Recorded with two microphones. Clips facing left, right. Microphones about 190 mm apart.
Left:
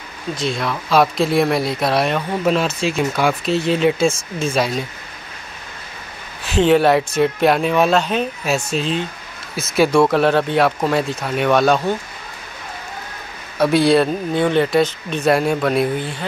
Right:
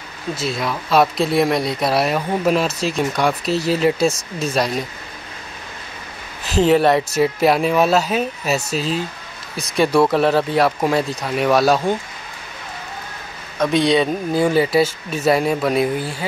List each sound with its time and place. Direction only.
0.4 s speech: 5° right (ahead or behind)
6.4 s speech: centre (ahead or behind)
13.6 s speech: 5° left (ahead or behind)